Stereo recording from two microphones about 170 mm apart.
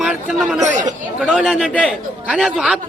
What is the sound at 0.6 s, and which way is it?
Speech, 45° right (ahead or behind).